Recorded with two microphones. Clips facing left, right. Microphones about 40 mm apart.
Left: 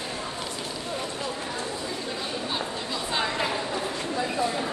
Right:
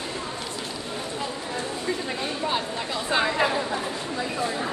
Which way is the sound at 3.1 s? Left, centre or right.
Centre.